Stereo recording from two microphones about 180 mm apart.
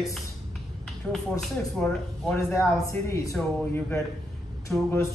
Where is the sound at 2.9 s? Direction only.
15° left (ahead or behind).